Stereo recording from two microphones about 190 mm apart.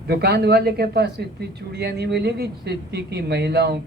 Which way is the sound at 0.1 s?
60° right (ahead or behind).